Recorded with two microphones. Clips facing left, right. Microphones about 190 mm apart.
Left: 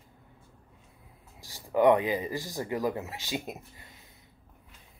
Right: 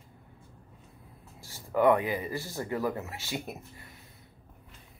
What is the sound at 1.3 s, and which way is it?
Speech, 15° left (ahead or behind).